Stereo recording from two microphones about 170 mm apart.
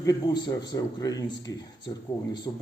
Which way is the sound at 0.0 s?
25° left (ahead or behind).